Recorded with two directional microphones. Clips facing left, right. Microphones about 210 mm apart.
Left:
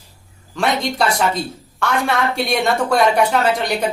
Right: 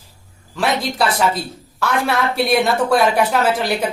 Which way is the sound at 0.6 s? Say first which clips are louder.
Even; 5° right (ahead or behind).